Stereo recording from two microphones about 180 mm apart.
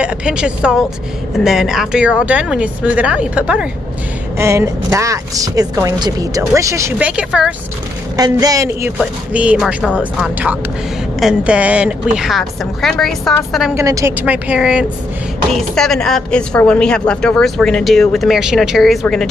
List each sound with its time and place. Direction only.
0.0 s a woman's voice: 5° right (ahead or behind)
8.2 s a woman's voice: 20° right (ahead or behind); by 13.7 s centre (ahead or behind)
13.7 s a woman's voice: 15° right (ahead or behind); by 19.2 s centre (ahead or behind)